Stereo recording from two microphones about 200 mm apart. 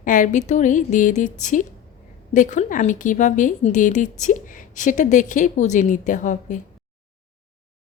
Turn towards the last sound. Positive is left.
turn(degrees=40)  # may be behind; listen again after turning